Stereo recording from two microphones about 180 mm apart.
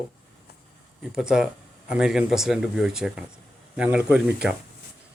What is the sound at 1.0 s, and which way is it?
Speech, 5° right (ahead or behind).